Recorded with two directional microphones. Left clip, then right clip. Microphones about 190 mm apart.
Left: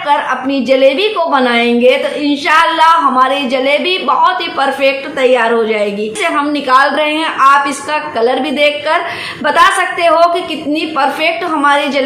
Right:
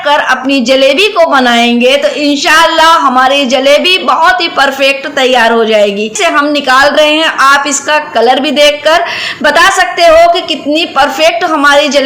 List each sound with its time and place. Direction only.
0.1 s a woman's voice: 30° right (ahead or behind)